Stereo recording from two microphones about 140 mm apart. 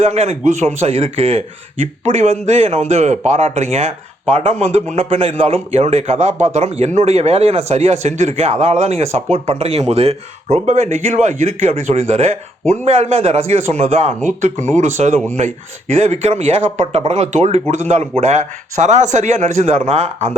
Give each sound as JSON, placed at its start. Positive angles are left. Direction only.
{"t": 0.0, "sound": "a man's voice", "side_deg": -50}